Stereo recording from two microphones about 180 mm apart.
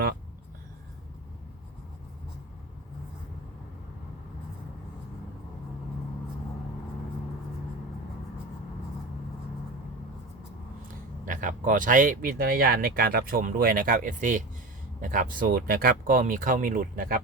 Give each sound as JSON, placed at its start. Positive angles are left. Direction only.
{"t": 11.3, "sound": "speech", "side_deg": -45}